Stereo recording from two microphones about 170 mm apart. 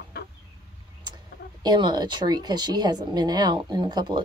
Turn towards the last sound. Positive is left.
turn(degrees=-25)  # may be behind; listen again after turning